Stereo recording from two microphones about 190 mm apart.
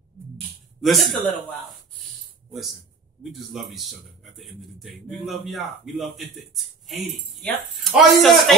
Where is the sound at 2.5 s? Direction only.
Centre (ahead or behind).